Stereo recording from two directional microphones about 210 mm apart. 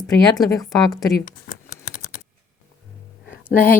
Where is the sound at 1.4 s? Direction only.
45° left (ahead or behind).